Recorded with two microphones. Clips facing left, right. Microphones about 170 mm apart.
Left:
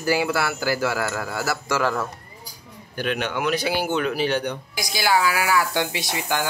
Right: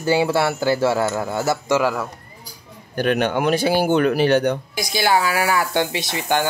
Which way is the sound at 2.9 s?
50° right (ahead or behind).